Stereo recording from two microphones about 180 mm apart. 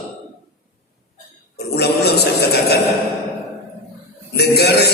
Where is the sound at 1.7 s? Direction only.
65° left (ahead or behind).